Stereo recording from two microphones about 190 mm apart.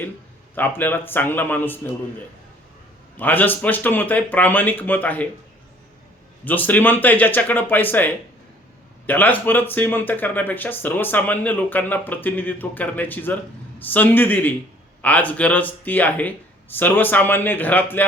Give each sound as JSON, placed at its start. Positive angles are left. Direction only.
{"t": 0.5, "sound": "speech", "side_deg": 10}
{"t": 3.2, "sound": "speech", "side_deg": 10}
{"t": 6.4, "sound": "speech", "side_deg": 10}